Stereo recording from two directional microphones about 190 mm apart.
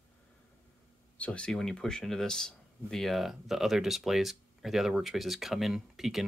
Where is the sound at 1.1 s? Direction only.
5° left (ahead or behind).